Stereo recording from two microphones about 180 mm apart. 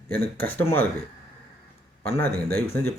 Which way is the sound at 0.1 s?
10° left (ahead or behind).